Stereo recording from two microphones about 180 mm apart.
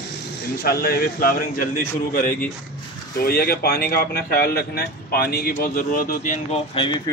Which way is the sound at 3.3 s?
55° left (ahead or behind).